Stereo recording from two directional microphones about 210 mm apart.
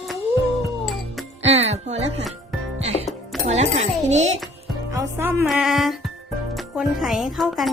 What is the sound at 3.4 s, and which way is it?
Speech, 30° right (ahead or behind).